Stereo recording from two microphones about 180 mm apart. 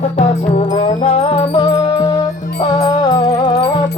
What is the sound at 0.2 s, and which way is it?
Music, 40° left (ahead or behind).